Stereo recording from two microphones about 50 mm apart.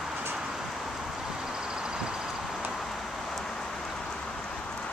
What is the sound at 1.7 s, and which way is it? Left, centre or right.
Vehicle, centre.